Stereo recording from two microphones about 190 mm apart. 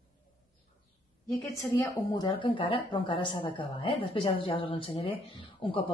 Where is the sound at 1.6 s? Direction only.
20° left (ahead or behind).